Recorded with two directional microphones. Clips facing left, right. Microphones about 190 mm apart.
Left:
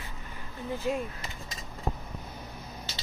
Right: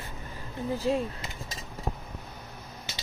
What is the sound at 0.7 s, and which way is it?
Speech, 35° right (ahead or behind).